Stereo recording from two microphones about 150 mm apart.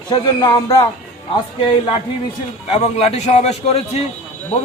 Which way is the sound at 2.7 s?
45° left (ahead or behind).